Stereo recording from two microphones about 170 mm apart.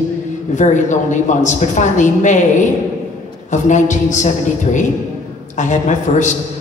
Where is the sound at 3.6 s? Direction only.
45° left (ahead or behind).